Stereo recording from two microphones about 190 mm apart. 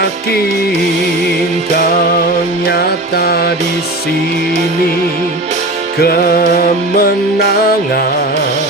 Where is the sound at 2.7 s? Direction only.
55° left (ahead or behind).